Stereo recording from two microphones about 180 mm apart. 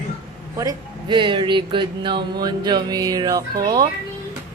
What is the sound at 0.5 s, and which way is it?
Speech, 20° right (ahead or behind).